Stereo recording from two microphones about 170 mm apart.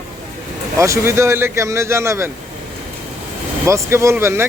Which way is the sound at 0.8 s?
15° right (ahead or behind).